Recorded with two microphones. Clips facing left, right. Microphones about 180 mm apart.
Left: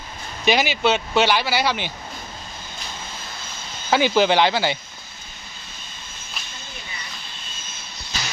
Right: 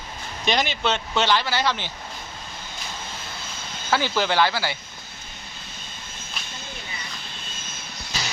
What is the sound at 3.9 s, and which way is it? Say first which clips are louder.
Speech: left 6 dB; 15° left (ahead or behind).